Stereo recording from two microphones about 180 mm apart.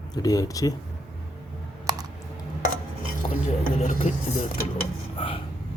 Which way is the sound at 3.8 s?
40° left (ahead or behind).